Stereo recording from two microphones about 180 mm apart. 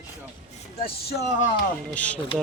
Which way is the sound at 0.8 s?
60° left (ahead or behind).